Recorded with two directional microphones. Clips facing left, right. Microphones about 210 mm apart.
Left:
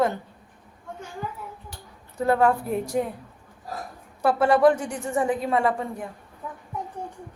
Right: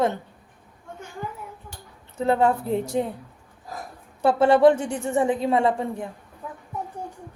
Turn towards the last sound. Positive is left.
turn(degrees=-25)  # may be behind; listen again after turning